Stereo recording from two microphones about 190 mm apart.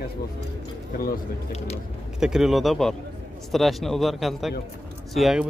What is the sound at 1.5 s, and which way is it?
Speech, 35° left (ahead or behind).